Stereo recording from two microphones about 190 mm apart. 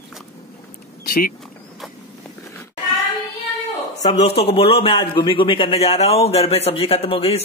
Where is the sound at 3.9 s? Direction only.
35° left (ahead or behind).